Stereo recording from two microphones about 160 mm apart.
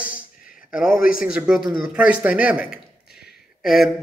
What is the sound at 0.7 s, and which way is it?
A man's voice, 5° right (ahead or behind).